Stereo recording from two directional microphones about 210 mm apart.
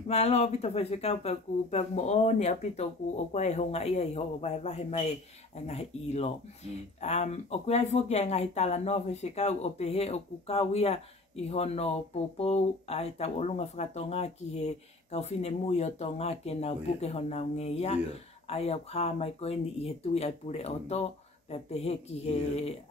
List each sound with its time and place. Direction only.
0.1 s speech: 30° left (ahead or behind)